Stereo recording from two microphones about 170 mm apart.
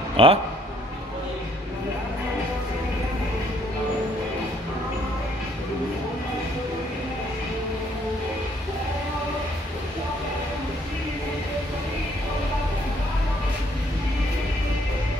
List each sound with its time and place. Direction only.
0.2 s speech: 30° right (ahead or behind)